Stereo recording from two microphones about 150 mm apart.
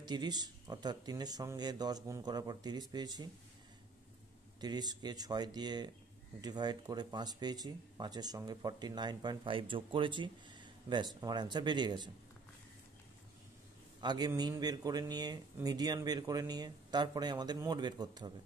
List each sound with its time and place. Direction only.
0.0 s speech: 30° right (ahead or behind)
4.6 s speech: 25° right (ahead or behind)
14.0 s speech: 25° right (ahead or behind)